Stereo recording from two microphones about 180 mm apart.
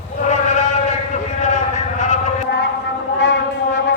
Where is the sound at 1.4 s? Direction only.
40° left (ahead or behind).